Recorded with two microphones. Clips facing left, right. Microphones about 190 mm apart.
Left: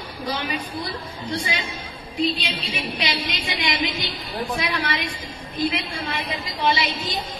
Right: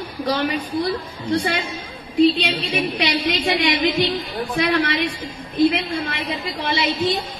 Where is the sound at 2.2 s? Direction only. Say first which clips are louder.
Right 8 dB; 65° right (ahead or behind).